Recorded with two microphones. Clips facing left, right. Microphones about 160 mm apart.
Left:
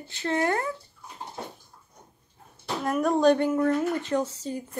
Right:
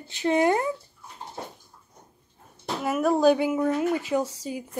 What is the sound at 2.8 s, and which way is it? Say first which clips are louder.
A woman's voice: right 1 dB; 5° right (ahead or behind).